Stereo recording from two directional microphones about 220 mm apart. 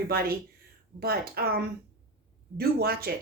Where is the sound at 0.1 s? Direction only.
45° right (ahead or behind).